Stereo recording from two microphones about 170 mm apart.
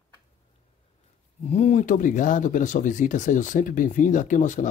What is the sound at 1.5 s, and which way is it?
Speech, 40° left (ahead or behind).